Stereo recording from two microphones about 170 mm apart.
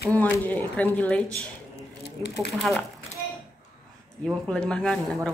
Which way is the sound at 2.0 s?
80° left.